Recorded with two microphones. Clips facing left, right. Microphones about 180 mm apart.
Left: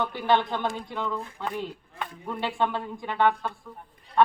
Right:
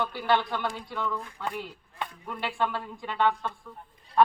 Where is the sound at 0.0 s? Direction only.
20° left (ahead or behind).